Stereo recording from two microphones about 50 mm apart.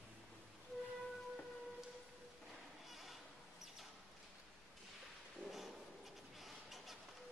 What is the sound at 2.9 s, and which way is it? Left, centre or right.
Bleat, centre.